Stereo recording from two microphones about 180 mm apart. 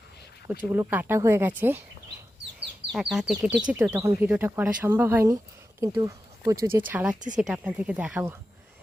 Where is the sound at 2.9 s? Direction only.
5° right (ahead or behind).